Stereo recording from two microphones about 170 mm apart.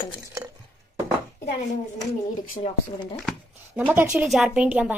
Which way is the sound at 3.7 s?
10° right (ahead or behind).